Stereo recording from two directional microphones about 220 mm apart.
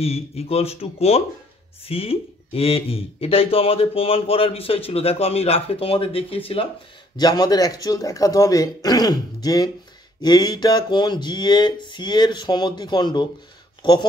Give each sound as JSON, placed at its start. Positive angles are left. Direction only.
{"t": 0.0, "sound": "speech", "side_deg": 25}